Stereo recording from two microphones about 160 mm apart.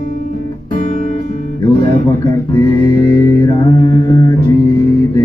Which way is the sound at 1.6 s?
30° left (ahead or behind).